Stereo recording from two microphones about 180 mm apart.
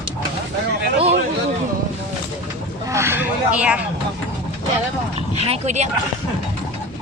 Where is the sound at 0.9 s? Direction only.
35° right (ahead or behind).